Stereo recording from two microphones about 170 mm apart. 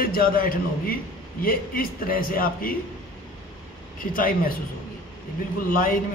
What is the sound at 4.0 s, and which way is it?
Speech, 55° left (ahead or behind).